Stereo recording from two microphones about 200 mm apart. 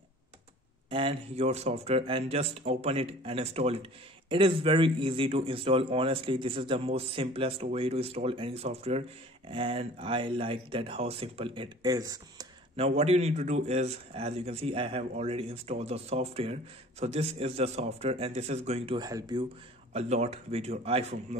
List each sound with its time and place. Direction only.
0.8 s a man's voice: 25° right (ahead or behind)
12.7 s a man's voice: 30° right (ahead or behind)
18.9 s a man's voice: 20° right (ahead or behind)
19.9 s a man's voice: 35° right (ahead or behind)